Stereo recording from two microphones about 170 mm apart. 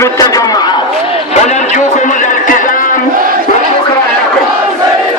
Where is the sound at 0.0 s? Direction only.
20° left (ahead or behind).